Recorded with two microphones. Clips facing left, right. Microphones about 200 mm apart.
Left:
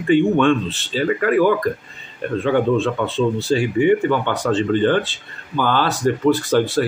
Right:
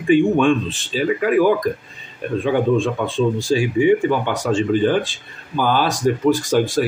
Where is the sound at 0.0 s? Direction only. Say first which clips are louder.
Even; 10° right (ahead or behind).